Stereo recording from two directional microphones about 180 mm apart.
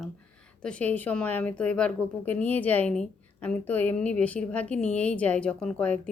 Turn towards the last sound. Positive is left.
turn(degrees=5)  # may be behind; listen again after turning